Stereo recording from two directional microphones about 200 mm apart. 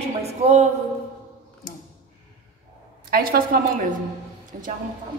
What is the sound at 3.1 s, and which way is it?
Speech, 50° right (ahead or behind).